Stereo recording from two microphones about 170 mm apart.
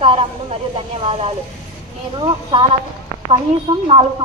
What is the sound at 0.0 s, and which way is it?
Speech, 30° right (ahead or behind).